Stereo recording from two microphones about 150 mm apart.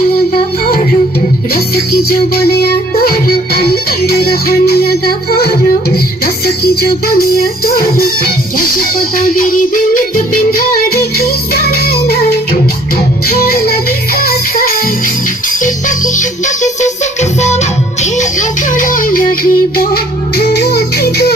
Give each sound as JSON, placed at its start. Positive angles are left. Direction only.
{"t": 1.5, "sound": "music", "side_deg": 90}
{"t": 10.5, "sound": "music", "side_deg": 85}
{"t": 16.6, "sound": "music", "side_deg": 50}